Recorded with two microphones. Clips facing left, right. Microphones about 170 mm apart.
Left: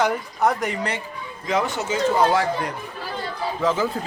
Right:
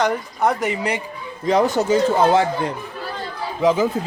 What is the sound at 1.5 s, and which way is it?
Speech, 35° right (ahead or behind).